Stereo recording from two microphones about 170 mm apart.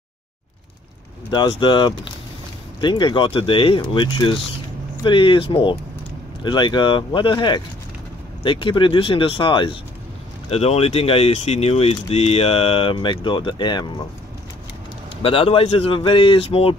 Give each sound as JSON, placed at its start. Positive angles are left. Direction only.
{"t": 1.3, "sound": "speech", "side_deg": 25}
{"t": 15.2, "sound": "speech", "side_deg": 35}